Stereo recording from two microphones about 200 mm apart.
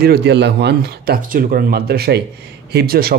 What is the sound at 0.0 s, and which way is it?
Speech, 55° right (ahead or behind).